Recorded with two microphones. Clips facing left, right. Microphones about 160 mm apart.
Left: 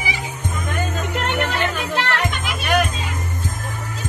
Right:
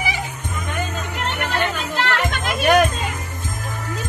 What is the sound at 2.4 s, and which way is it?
Music, 50° right (ahead or behind).